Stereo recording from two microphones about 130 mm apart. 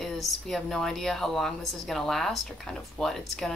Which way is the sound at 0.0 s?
Centre (ahead or behind).